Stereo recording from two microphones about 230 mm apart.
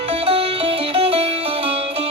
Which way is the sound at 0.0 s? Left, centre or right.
Right.